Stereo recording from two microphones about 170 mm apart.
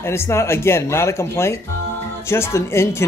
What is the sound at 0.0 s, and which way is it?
Speech, 15° left (ahead or behind).